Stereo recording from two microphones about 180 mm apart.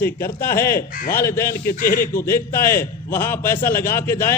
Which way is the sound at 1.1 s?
15° left (ahead or behind).